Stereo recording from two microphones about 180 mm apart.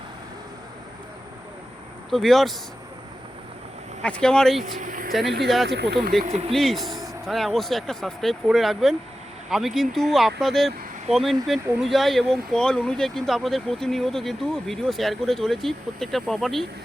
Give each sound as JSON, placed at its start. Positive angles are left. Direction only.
{"t": 2.0, "sound": "speech", "side_deg": 0}
{"t": 4.0, "sound": "speech", "side_deg": 5}
{"t": 4.8, "sound": "speech", "side_deg": -50}
{"t": 5.6, "sound": "speech", "side_deg": -65}
{"t": 6.2, "sound": "speech", "side_deg": -35}
{"t": 6.5, "sound": "speech", "side_deg": 0}